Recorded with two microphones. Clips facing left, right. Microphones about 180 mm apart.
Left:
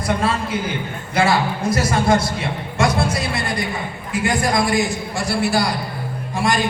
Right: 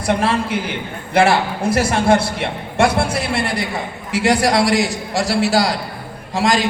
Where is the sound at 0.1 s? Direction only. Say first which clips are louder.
Right 3 dB; 70° right (ahead or behind).